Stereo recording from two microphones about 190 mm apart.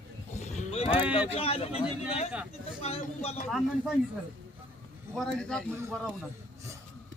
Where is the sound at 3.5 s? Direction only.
Centre (ahead or behind).